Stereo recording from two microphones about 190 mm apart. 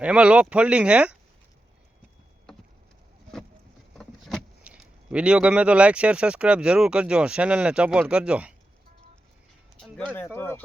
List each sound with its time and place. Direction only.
0.0 s speech: 5° right (ahead or behind)
3.9 s speech: centre (ahead or behind)
10.2 s speech: 10° left (ahead or behind)